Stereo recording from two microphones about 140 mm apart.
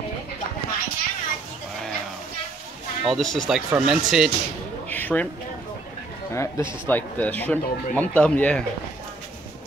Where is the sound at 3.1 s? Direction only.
5° left (ahead or behind).